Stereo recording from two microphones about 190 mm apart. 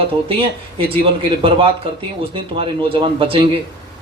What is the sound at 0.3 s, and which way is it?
Speech, 30° right (ahead or behind).